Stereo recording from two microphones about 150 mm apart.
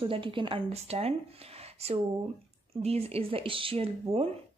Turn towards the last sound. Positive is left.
turn(degrees=-40)  # may be behind; listen again after turning